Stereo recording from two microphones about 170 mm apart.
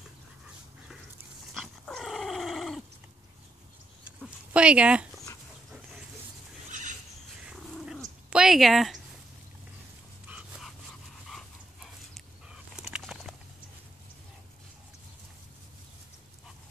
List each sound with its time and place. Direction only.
1.5 s dog: centre (ahead or behind)
4.6 s speech: 5° right (ahead or behind)
6.7 s horse: 45° right (ahead or behind)
7.4 s cat: 5° right (ahead or behind)
10.2 s a sound: 5° right (ahead or behind)
11.2 s dog: centre (ahead or behind)